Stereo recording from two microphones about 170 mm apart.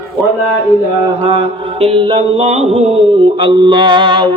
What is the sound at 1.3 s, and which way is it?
A man's voice, 30° right (ahead or behind).